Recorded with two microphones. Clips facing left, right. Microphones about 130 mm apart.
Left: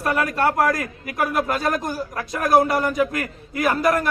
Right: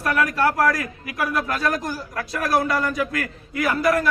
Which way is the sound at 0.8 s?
45° left (ahead or behind).